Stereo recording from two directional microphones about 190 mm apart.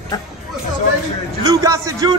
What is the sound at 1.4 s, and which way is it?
Speech, 20° right (ahead or behind).